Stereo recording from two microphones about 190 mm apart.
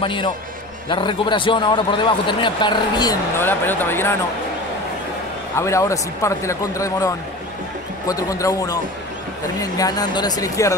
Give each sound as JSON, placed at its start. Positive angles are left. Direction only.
{"t": 0.0, "sound": "a man's voice", "side_deg": 25}
{"t": 5.6, "sound": "speech", "side_deg": 15}
{"t": 8.1, "sound": "a man's voice", "side_deg": 20}